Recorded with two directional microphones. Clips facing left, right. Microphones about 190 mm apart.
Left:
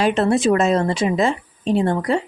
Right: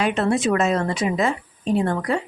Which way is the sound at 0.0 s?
30° left (ahead or behind).